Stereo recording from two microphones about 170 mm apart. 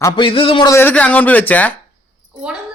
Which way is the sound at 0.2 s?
30° left (ahead or behind).